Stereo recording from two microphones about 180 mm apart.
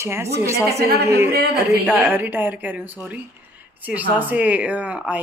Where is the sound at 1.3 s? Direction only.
60° right (ahead or behind).